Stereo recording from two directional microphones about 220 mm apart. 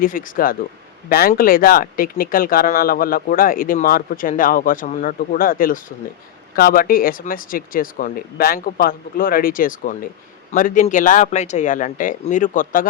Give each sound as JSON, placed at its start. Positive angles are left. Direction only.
{"t": 0.0, "sound": "speech", "side_deg": 40}